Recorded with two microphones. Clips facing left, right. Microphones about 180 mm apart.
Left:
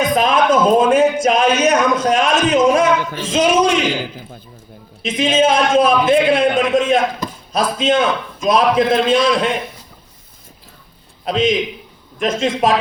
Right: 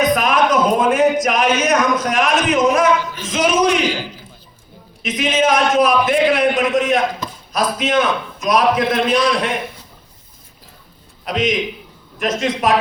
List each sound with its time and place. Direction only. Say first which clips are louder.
0.0 s a sound: left 1 dB; 25° left (ahead or behind)
1.2 s a man's voice: left 3 dB; 25° left (ahead or behind)
5.0 s a man's voice: left 2 dB; 25° left (ahead or behind)
11.3 s a man's voice: left 3 dB; 30° left (ahead or behind)